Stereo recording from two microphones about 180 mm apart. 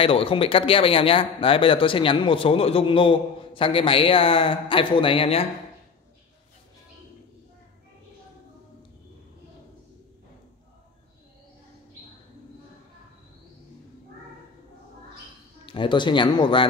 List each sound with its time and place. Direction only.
0.0 s speech: 30° left (ahead or behind)
15.6 s speech: 25° left (ahead or behind)